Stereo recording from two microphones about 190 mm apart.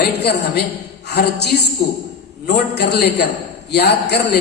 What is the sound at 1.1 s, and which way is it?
A man's voice, 60° left (ahead or behind).